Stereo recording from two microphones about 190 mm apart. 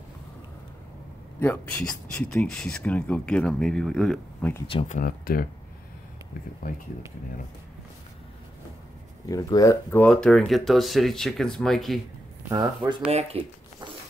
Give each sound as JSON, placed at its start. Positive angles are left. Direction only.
{"t": 1.4, "sound": "speech", "side_deg": 5}
{"t": 4.8, "sound": "speech", "side_deg": 45}
{"t": 9.2, "sound": "speech", "side_deg": 20}
{"t": 12.4, "sound": "speech", "side_deg": -20}
{"t": 13.4, "sound": "speech", "side_deg": -30}